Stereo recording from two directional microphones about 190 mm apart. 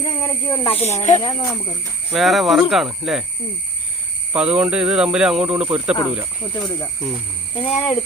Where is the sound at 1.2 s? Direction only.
25° left (ahead or behind).